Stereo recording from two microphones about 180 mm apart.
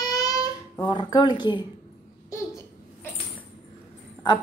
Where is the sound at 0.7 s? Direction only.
25° left (ahead or behind).